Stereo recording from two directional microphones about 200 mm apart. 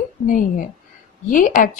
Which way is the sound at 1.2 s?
40° left (ahead or behind).